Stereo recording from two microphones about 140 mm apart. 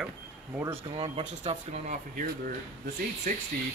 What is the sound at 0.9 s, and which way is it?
Speech, 40° right (ahead or behind).